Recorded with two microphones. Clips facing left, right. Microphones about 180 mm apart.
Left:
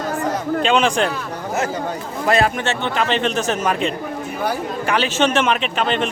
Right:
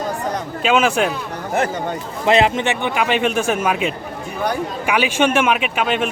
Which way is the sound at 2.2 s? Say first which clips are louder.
Right 2 dB; 20° right (ahead or behind).